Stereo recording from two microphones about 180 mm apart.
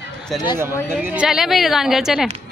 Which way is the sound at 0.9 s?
10° right (ahead or behind).